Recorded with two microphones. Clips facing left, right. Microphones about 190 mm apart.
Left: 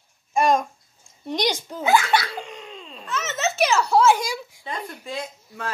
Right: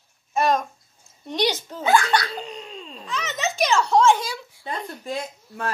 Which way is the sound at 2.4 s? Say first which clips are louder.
Right 2 dB; 35° right (ahead or behind).